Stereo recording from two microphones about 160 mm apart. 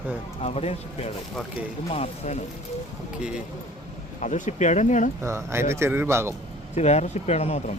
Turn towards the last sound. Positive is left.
turn(degrees=40)  # may be behind; listen again after turning